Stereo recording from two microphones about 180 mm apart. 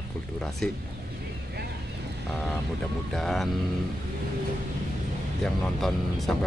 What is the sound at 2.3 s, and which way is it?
Speech, centre (ahead or behind).